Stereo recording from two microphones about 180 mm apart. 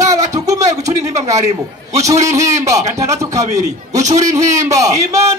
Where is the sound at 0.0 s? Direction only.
20° right (ahead or behind).